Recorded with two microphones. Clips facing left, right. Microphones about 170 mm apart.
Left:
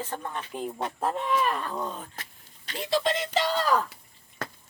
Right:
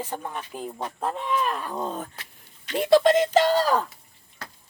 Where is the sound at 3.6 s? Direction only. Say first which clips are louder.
Right 2 dB; 30° right (ahead or behind).